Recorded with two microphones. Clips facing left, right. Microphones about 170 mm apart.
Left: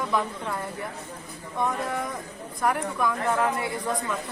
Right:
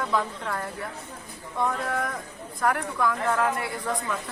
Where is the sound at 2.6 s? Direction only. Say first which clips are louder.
Even; 20° left (ahead or behind).